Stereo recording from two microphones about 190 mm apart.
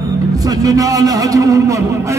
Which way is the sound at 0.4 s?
20° right (ahead or behind).